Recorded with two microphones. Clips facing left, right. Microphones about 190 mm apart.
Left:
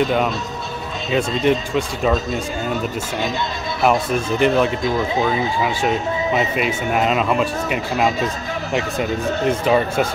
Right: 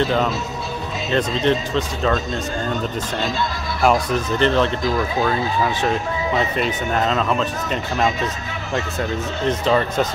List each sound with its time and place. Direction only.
0.0 s speech: 10° left (ahead or behind)
4.8 s speech: 20° left (ahead or behind)
5.3 s speech: 10° left (ahead or behind)
9.5 s speech: 10° left (ahead or behind)